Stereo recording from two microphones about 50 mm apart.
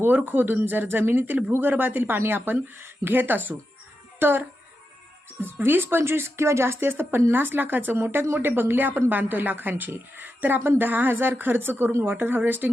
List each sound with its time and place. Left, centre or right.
0.3 s a woman's voice: right
7.3 s a woman's voice: right